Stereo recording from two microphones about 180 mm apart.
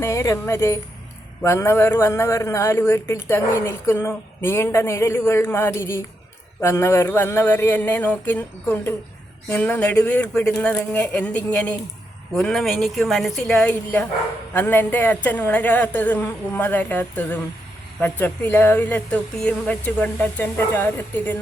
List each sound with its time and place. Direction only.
0.0 s a woman's voice: 15° left (ahead or behind)